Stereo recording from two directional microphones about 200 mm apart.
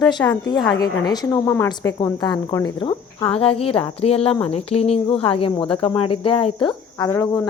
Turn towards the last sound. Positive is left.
turn(degrees=15)  # may be behind; listen again after turning